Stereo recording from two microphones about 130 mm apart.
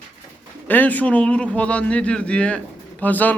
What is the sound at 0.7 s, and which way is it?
A man's voice, 15° left (ahead or behind).